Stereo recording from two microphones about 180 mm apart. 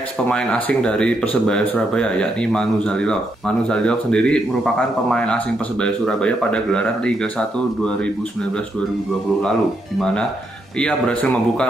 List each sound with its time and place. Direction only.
0.3 s speech: 5° left (ahead or behind)
9.4 s speech: 5° left (ahead or behind)